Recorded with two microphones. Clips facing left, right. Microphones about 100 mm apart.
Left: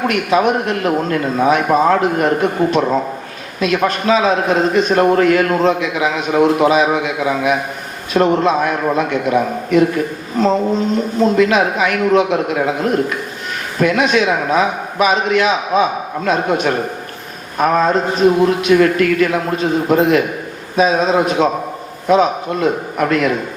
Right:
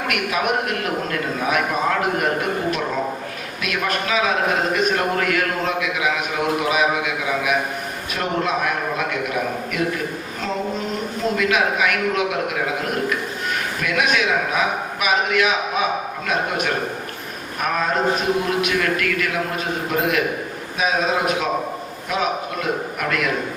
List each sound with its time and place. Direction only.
0.1 s a man's voice: 30° left (ahead or behind)